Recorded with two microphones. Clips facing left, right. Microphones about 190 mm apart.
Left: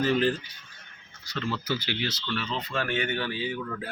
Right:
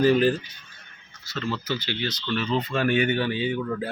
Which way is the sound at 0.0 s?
10° right (ahead or behind).